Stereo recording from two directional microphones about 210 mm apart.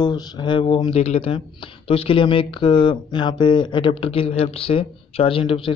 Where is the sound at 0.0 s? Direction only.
20° left (ahead or behind).